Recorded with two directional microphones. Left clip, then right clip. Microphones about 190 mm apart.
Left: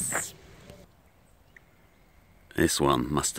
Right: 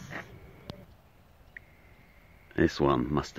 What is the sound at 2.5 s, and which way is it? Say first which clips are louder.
Speech: left 2 dB; 10° left (ahead or behind).